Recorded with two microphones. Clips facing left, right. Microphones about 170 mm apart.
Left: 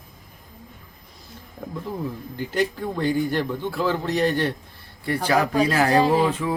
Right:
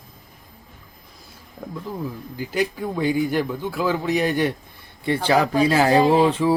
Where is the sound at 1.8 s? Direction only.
5° right (ahead or behind).